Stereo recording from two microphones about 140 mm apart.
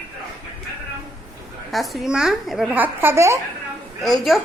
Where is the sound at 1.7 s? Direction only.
Centre (ahead or behind).